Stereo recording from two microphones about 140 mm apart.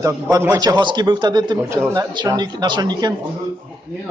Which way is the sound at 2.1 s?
30° right (ahead or behind).